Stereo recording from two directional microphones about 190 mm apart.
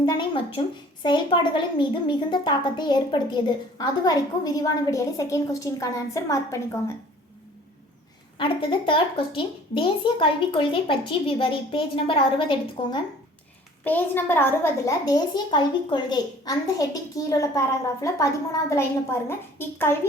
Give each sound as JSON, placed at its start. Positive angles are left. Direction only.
{"t": 0.0, "sound": "a sound", "side_deg": 25}
{"t": 1.0, "sound": "a woman's voice", "side_deg": 25}
{"t": 8.9, "sound": "speech", "side_deg": 25}
{"t": 13.8, "sound": "a woman's voice", "side_deg": 10}